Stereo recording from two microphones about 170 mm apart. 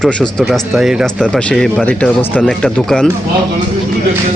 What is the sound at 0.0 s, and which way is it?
Speech, centre (ahead or behind).